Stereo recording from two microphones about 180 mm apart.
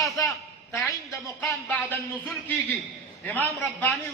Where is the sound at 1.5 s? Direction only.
10° left (ahead or behind).